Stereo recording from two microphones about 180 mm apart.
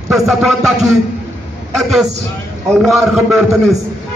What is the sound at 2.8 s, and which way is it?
Speech, centre (ahead or behind).